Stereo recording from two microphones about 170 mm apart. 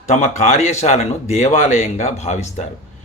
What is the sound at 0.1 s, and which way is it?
Speech, 40° left (ahead or behind).